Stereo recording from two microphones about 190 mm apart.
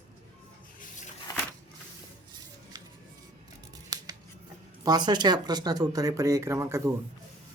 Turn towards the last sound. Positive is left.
turn(degrees=-15)  # may be behind; listen again after turning